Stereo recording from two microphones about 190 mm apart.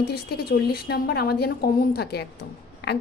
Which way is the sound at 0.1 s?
55° left (ahead or behind).